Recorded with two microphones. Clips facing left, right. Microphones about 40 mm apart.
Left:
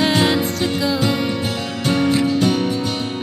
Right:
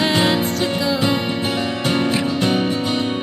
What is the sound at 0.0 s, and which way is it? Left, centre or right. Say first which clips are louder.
Music: left 1 dB; centre.